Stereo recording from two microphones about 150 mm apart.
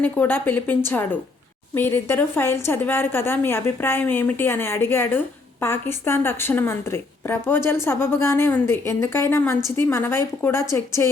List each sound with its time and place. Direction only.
0.0 s a woman's voice: 10° left (ahead or behind)